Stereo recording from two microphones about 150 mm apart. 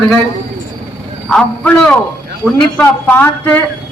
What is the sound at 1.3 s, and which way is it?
A woman's voice, 5° left (ahead or behind).